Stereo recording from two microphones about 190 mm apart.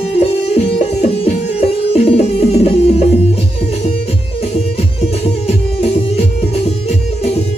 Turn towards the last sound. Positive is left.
turn(degrees=35)  # may be behind; listen again after turning